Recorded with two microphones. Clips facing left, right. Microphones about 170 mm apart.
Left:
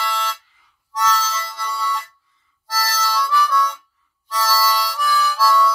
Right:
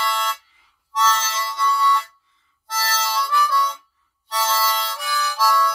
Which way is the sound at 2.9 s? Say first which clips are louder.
Left 2 dB; 25° right (ahead or behind).